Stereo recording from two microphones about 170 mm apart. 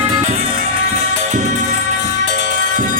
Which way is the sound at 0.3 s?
35° right (ahead or behind).